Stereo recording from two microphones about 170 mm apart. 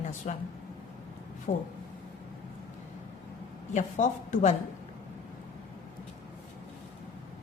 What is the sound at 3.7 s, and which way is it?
Speech, 45° left (ahead or behind).